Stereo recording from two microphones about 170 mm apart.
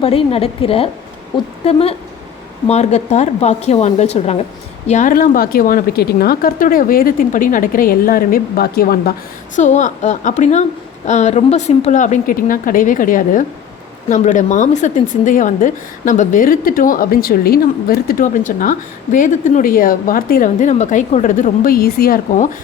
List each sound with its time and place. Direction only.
0.0 s a woman's voice: 35° left (ahead or behind); by 9.1 s 60° left (ahead or behind)
9.6 s a woman's voice: 45° left (ahead or behind)